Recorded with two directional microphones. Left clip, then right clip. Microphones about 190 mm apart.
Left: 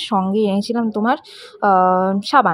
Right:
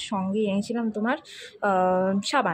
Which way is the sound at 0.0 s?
35° left (ahead or behind).